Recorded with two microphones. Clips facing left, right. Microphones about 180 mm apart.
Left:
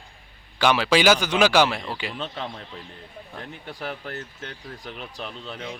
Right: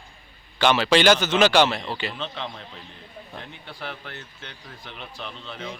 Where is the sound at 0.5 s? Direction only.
10° left (ahead or behind).